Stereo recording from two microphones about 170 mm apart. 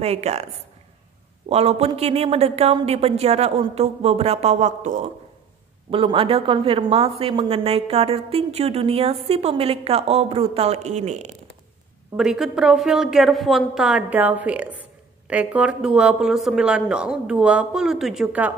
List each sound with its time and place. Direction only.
0.0 s speech: 40° right (ahead or behind)
1.5 s speech: 35° right (ahead or behind)
5.9 s speech: 30° right (ahead or behind)
12.2 s a woman's voice: centre (ahead or behind)